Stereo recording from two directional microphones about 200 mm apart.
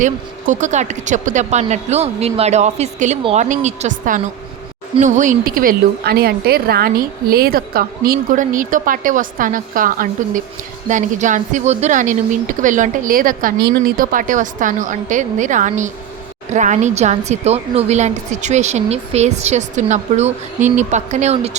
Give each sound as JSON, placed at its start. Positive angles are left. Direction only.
{"t": 0.0, "sound": "a woman's voice", "side_deg": -40}